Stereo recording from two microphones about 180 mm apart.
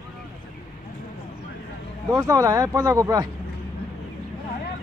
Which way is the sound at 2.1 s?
20° right (ahead or behind).